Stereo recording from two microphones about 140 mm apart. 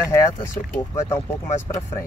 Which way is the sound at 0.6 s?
25° left (ahead or behind).